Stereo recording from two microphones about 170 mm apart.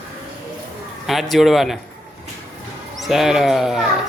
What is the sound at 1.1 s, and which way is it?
Speech, centre (ahead or behind).